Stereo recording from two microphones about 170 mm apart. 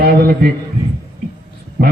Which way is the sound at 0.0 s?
65° right (ahead or behind).